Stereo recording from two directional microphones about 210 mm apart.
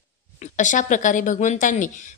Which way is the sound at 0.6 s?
35° left (ahead or behind).